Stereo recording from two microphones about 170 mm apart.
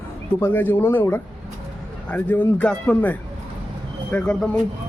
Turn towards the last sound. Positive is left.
turn(degrees=5)  # may be behind; listen again after turning